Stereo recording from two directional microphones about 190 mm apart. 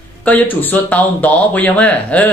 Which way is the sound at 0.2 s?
10° left (ahead or behind).